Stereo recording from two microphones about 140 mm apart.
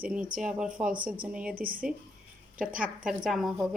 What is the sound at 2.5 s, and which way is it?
Speech, 10° right (ahead or behind).